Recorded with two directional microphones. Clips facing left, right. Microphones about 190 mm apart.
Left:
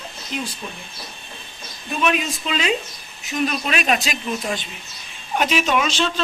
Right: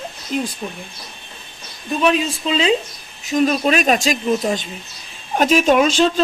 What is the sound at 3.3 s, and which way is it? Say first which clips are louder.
Speech: right 7 dB; 40° right (ahead or behind).